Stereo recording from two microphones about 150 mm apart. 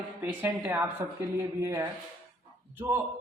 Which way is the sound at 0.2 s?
10° right (ahead or behind).